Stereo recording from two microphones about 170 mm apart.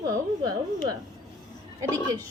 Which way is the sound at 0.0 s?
20° right (ahead or behind).